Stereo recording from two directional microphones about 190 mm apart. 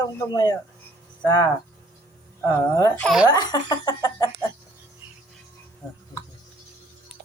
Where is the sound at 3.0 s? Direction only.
Centre (ahead or behind).